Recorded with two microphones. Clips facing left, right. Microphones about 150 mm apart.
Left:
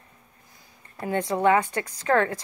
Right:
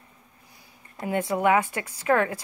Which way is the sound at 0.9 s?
15° right (ahead or behind).